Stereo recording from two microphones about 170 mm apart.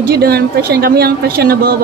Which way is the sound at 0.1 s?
65° right (ahead or behind).